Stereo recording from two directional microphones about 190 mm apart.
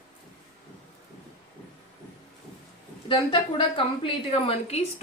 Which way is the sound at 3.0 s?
25° left (ahead or behind).